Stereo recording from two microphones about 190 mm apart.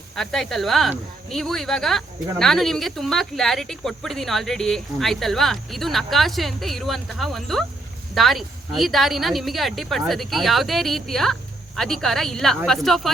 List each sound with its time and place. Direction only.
0.2 s speech: centre (ahead or behind)